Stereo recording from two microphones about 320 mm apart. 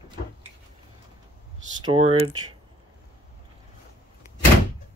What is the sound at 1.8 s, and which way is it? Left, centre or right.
Speech, centre.